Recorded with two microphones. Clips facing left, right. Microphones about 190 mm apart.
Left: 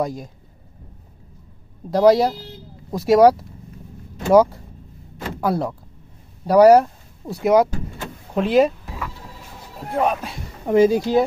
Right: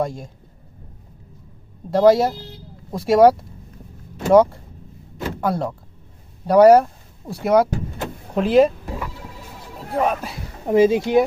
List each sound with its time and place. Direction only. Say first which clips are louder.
0.0 s speech: even; centre (ahead or behind)
1.9 s speech: even; centre (ahead or behind)
9.9 s speech: even; centre (ahead or behind)
10.9 s speech: right 1 dB; 20° right (ahead or behind)